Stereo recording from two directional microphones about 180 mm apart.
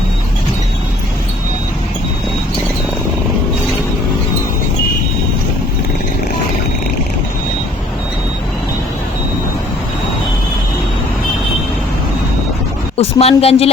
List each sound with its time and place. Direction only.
13.0 s a woman's voice: 35° left (ahead or behind)